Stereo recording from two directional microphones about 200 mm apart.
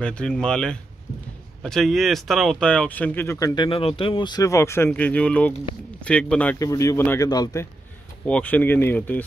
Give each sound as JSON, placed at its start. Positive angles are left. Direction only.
{"t": 0.0, "sound": "speech", "side_deg": 5}
{"t": 6.6, "sound": "speech", "side_deg": 15}